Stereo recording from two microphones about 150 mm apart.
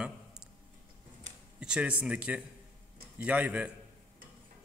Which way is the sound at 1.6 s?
5° right (ahead or behind).